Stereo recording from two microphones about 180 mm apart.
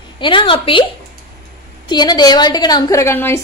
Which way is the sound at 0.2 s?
25° left (ahead or behind).